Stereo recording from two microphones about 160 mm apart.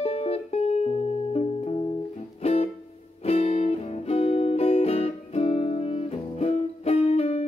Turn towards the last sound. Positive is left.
turn(degrees=40)  # may be behind; listen again after turning